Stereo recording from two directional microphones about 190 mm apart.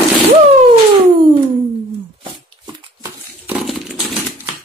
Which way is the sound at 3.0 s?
5° right (ahead or behind).